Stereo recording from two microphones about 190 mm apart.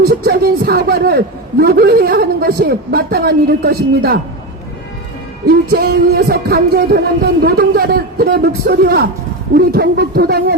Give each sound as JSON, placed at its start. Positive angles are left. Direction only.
{"t": 0.0, "sound": "a man's voice", "side_deg": -55}
{"t": 5.5, "sound": "music", "side_deg": -55}
{"t": 7.4, "sound": "a man's voice", "side_deg": -55}
{"t": 9.6, "sound": "music", "side_deg": -55}